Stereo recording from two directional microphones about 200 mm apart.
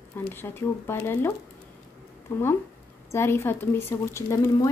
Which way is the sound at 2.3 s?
10° left (ahead or behind).